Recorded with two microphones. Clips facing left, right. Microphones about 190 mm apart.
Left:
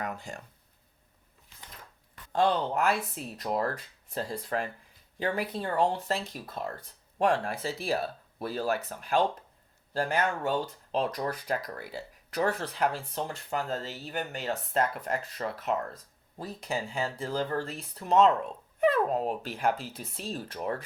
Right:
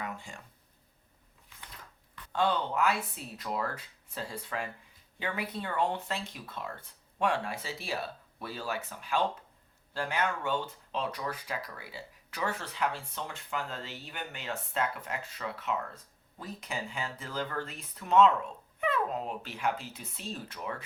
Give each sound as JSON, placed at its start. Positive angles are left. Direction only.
{"t": 0.0, "sound": "speech", "side_deg": 45}
{"t": 2.3, "sound": "speech", "side_deg": 40}